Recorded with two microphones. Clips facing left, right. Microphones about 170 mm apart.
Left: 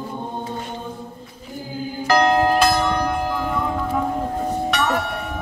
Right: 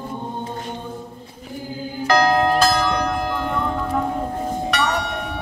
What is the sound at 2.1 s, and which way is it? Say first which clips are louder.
Music: left 1 dB; 5° left (ahead or behind).